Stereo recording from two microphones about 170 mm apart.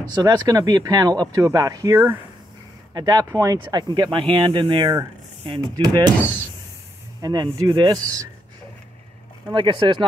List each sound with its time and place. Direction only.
0.2 s speech: 20° right (ahead or behind)
7.2 s speech: 25° right (ahead or behind)
9.5 s speech: 30° right (ahead or behind)